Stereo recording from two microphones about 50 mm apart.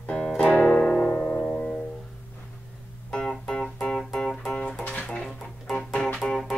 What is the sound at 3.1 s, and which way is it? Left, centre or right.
Music, centre.